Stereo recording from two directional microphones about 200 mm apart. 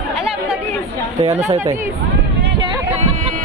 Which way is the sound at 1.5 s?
20° right (ahead or behind).